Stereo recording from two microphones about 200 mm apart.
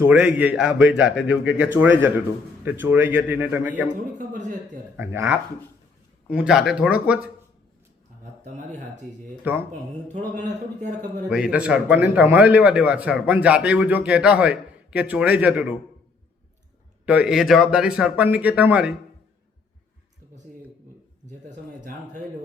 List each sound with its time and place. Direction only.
0.0 s a man's voice: 10° right (ahead or behind)
4.2 s a man's voice: 40° right (ahead or behind)
4.9 s a man's voice: 10° right (ahead or behind)
6.4 s speech: 5° right (ahead or behind)
8.2 s speech: 35° right (ahead or behind)
9.5 s a man's voice: 10° right (ahead or behind)
10.1 s a man's voice: 35° right (ahead or behind)
11.3 s a man's voice: 5° right (ahead or behind)
17.1 s speech: 5° right (ahead or behind)
21.2 s a sound: 40° right (ahead or behind)